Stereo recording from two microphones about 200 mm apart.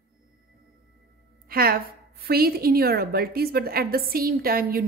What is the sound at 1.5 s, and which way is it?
A woman's voice, 50° right (ahead or behind).